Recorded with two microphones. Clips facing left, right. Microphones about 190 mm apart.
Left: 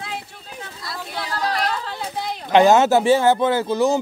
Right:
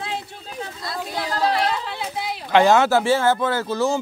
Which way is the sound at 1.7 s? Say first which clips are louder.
Even; 10° right (ahead or behind).